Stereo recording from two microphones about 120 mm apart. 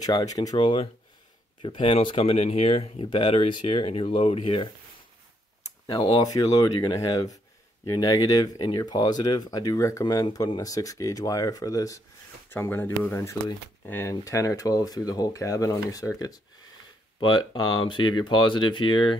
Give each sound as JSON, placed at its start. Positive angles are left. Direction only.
{"t": 0.0, "sound": "speech", "side_deg": 30}
{"t": 1.6, "sound": "speech", "side_deg": 45}
{"t": 3.1, "sound": "speech", "side_deg": 45}
{"t": 6.1, "sound": "speech", "side_deg": 30}
{"t": 12.4, "sound": "speech", "side_deg": 20}